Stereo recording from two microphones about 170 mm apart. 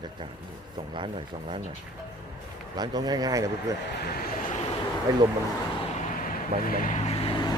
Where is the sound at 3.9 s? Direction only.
65° left (ahead or behind).